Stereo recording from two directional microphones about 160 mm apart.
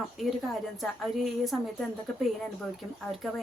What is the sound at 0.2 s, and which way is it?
A woman's voice, centre (ahead or behind).